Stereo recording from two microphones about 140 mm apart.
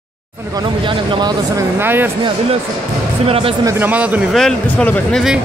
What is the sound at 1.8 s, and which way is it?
Speech, 15° right (ahead or behind).